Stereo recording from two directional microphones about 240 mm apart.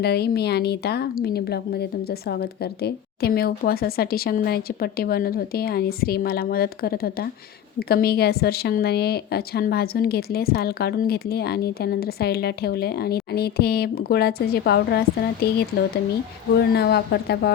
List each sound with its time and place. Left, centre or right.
0.0 s a woman's voice: left